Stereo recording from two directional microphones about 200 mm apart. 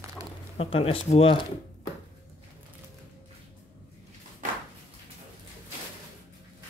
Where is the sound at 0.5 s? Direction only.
30° left (ahead or behind).